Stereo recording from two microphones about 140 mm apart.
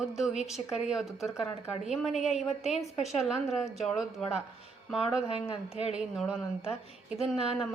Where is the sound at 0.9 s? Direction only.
5° right (ahead or behind).